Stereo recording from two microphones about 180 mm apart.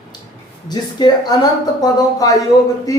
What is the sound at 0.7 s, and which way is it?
Speech, 25° left (ahead or behind).